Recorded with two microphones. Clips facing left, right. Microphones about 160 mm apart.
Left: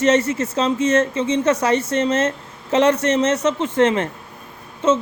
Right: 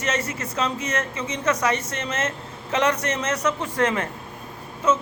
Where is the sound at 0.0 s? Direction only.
30° left (ahead or behind).